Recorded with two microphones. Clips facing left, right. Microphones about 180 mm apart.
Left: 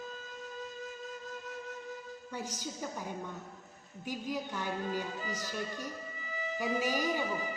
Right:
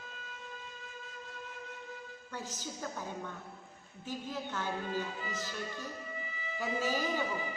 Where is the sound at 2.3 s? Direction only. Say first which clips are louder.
Left 2 dB; 15° left (ahead or behind).